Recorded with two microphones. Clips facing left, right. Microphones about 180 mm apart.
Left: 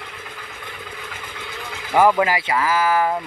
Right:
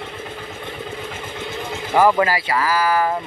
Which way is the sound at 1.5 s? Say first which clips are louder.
Right 5 dB; 25° right (ahead or behind).